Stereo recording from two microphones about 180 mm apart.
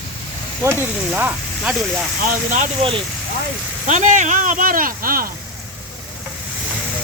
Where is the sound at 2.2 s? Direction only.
45° right (ahead or behind).